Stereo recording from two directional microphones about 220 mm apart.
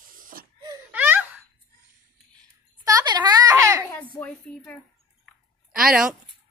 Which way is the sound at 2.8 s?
15° right (ahead or behind).